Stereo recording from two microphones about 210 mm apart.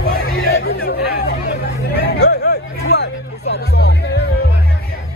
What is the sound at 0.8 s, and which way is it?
Hubbub, 50° left (ahead or behind).